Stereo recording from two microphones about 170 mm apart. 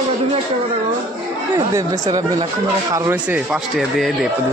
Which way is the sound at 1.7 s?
20° right (ahead or behind).